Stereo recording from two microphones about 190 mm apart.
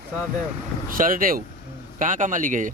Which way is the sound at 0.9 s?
45° right (ahead or behind).